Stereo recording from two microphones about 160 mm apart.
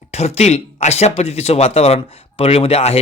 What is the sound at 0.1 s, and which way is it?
Speech, 45° left (ahead or behind).